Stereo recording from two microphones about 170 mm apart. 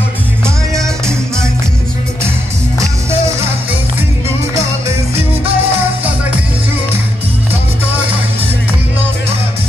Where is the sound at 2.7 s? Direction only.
15° right (ahead or behind).